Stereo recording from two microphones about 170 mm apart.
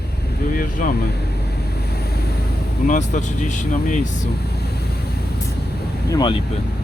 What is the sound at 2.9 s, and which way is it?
Speech, 45° left (ahead or behind).